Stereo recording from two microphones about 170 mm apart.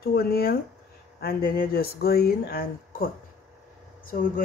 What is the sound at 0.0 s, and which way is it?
Speech, 65° left (ahead or behind).